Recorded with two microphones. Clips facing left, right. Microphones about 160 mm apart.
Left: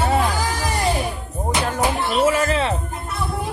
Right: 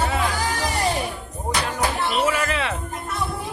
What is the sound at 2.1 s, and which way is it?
Music, 35° left (ahead or behind).